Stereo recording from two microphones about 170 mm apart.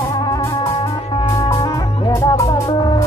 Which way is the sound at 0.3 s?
20° left (ahead or behind).